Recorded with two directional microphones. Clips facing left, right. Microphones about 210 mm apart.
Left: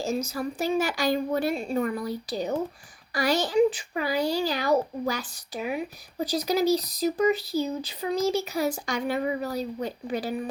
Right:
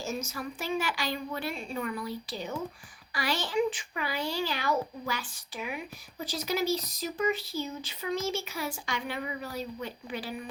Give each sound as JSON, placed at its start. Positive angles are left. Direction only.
{"t": 0.0, "sound": "a child's voice", "side_deg": 35}